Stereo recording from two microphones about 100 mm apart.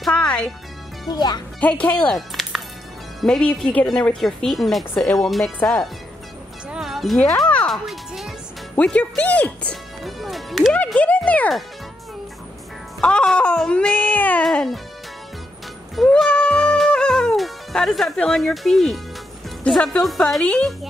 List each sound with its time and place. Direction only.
0.1 s music: 10° left (ahead or behind)
1.0 s speech: 45° left (ahead or behind)
1.6 s speech: 15° left (ahead or behind)
6.7 s music: centre (ahead or behind)
7.4 s music: 10° left (ahead or behind)
7.7 s music: centre (ahead or behind)
8.7 s speech: 10° left (ahead or behind)
10.0 s music: centre (ahead or behind)
11.0 s speech: 15° left (ahead or behind)
13.0 s speech: 10° left (ahead or behind)
14.4 s speech: 5° left (ahead or behind)
16.0 s music: 5° left (ahead or behind)
19.7 s speech: 5° left (ahead or behind)